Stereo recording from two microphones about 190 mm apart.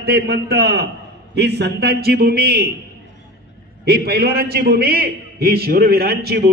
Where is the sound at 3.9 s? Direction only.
55° right (ahead or behind).